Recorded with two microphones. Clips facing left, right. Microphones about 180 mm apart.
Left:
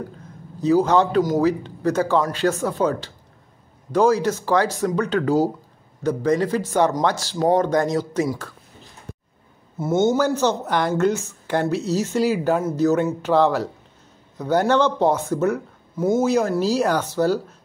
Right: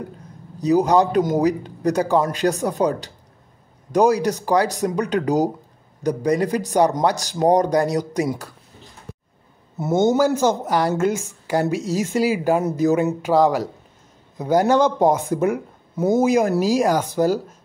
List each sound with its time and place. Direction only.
0.7 s speech: 15° right (ahead or behind)
9.8 s speech: 15° right (ahead or behind)